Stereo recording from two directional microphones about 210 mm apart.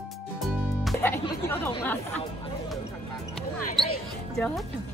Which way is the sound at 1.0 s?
10° left (ahead or behind).